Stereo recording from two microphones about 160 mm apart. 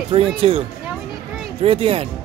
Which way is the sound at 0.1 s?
35° right (ahead or behind).